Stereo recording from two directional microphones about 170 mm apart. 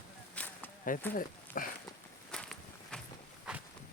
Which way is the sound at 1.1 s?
55° left (ahead or behind).